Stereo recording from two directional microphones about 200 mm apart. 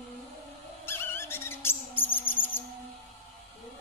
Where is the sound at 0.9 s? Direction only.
10° left (ahead or behind).